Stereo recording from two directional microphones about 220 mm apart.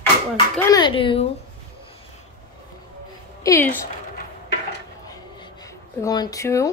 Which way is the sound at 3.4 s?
15° left (ahead or behind).